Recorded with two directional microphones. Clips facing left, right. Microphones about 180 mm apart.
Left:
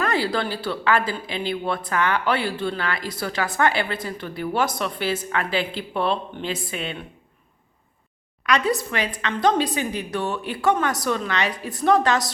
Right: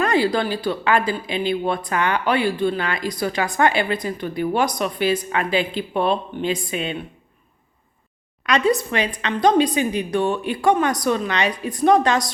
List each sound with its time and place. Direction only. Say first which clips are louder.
0.0 s speech: right 4 dB; 15° right (ahead or behind)
8.4 s a woman's voice: right 3 dB; 20° right (ahead or behind)